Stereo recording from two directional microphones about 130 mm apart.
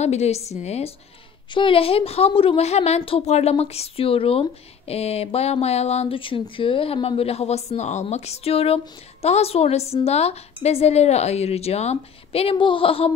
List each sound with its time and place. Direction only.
0.0 s a woman's voice: 60° left (ahead or behind)
1.5 s a woman's voice: 40° left (ahead or behind)